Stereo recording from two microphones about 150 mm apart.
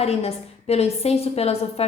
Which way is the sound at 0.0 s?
45° left (ahead or behind).